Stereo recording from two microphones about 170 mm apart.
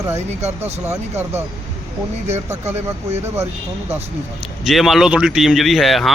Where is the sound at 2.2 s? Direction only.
40° right (ahead or behind).